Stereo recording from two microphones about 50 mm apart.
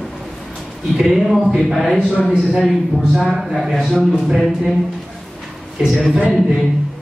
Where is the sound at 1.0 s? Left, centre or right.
Centre.